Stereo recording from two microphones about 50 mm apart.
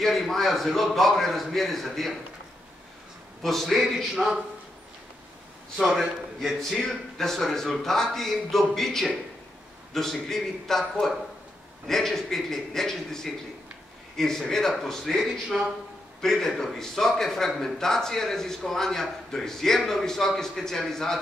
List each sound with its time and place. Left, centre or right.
0.0 s a man's voice: centre
3.6 s a man's voice: centre
5.8 s a man's voice: centre
6.6 s a man's voice: centre
10.2 s a man's voice: centre
15.1 s speech: centre
16.2 s a man's voice: centre